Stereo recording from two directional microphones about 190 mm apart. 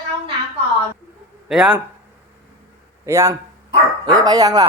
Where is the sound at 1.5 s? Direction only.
5° right (ahead or behind).